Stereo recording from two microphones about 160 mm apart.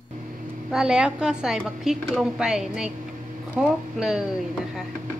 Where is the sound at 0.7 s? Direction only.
5° right (ahead or behind).